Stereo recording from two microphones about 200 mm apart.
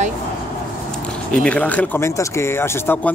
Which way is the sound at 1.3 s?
5° left (ahead or behind).